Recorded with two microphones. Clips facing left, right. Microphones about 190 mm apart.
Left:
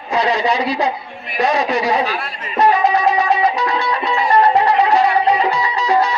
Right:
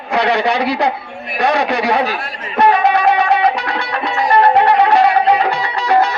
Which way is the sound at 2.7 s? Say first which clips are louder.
Right 2 dB; 60° right (ahead or behind).